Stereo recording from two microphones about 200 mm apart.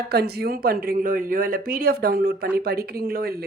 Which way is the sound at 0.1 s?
50° right (ahead or behind).